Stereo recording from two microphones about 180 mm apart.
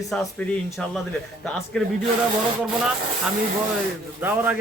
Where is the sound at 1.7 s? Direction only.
5° left (ahead or behind).